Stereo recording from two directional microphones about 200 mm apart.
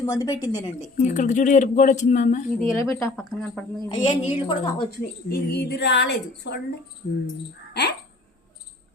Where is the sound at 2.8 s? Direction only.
10° left (ahead or behind).